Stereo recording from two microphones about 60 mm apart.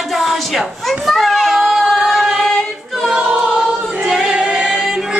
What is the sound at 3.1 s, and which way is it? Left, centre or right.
Choir, centre.